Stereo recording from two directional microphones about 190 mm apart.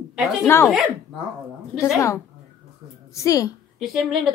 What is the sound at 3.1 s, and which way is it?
Speech, 15° left (ahead or behind).